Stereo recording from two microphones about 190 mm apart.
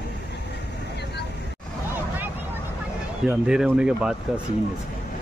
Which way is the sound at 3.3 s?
5° right (ahead or behind).